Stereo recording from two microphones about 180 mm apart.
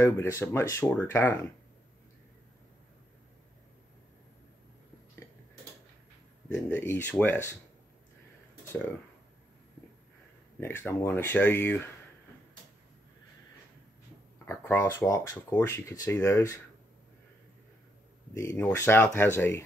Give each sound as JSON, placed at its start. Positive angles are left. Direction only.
{"t": 0.0, "sound": "speech", "side_deg": 15}
{"t": 6.5, "sound": "speech", "side_deg": 10}
{"t": 10.6, "sound": "speech", "side_deg": 15}
{"t": 14.4, "sound": "speech", "side_deg": 10}
{"t": 18.3, "sound": "speech", "side_deg": 15}